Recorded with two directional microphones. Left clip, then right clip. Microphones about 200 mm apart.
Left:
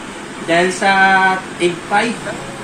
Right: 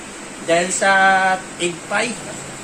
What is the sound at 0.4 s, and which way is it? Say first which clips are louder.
Speech: left 2 dB; 20° right (ahead or behind).